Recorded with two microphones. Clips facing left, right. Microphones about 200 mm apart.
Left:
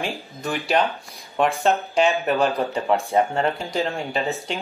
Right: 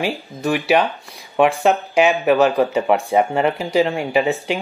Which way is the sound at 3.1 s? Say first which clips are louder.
Right 4 dB; 10° right (ahead or behind).